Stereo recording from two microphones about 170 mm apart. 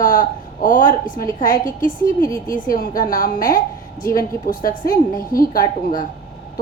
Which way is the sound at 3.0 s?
55° left (ahead or behind).